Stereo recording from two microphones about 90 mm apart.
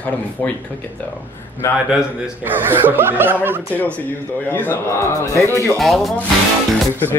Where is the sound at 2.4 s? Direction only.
25° right (ahead or behind).